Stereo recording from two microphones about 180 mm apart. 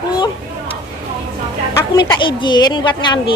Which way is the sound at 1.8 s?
15° left (ahead or behind).